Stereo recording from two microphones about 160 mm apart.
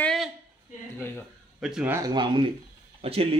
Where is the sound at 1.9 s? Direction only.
25° right (ahead or behind).